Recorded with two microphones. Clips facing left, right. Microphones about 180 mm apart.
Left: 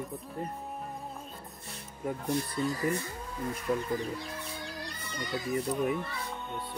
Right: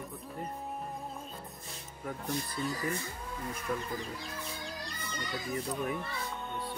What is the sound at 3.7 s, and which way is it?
Speech, 30° left (ahead or behind).